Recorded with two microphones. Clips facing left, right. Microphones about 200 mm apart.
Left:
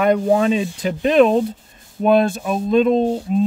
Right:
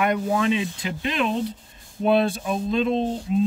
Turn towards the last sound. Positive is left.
turn(degrees=50)  # may be behind; listen again after turning